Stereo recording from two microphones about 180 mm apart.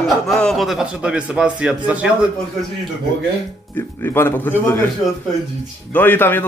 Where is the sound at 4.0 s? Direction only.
15° left (ahead or behind).